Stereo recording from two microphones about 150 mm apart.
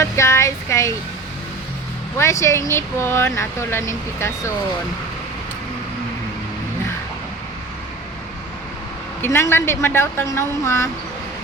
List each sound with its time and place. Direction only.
0.0 s speech: 20° left (ahead or behind)
2.1 s speech: 20° left (ahead or behind)
9.2 s speech: 15° left (ahead or behind)